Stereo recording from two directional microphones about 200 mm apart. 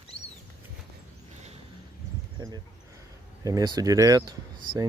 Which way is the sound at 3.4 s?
20° right (ahead or behind).